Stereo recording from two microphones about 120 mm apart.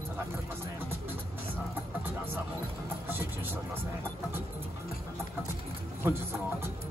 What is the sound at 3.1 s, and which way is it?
Vehicle, 20° right (ahead or behind).